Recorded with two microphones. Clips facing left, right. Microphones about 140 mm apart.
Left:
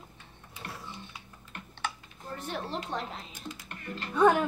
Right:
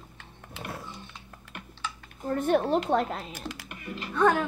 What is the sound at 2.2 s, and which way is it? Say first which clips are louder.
Speech: right 13 dB; 55° right (ahead or behind).